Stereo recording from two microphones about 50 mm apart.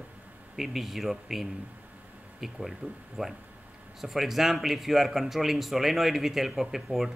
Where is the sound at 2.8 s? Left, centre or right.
Right.